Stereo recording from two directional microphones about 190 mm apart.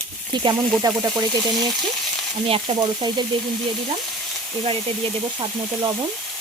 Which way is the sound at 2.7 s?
25° right (ahead or behind).